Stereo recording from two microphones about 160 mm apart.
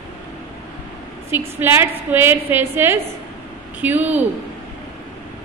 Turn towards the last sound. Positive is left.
turn(degrees=-10)  # may be behind; listen again after turning